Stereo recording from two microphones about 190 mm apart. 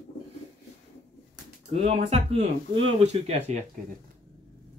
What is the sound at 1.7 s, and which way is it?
Speech, 30° right (ahead or behind).